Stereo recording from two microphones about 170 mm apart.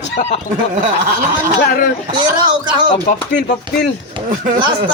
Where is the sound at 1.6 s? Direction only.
65° left (ahead or behind).